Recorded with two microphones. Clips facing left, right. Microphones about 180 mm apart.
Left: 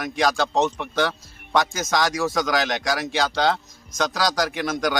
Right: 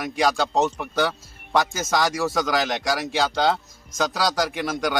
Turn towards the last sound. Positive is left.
turn(degrees=0)  # may be behind; listen again after turning